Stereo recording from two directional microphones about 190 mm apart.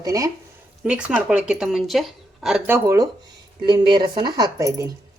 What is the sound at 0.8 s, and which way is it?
Speech, 5° right (ahead or behind).